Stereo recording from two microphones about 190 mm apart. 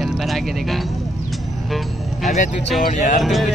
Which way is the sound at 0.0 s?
Centre (ahead or behind).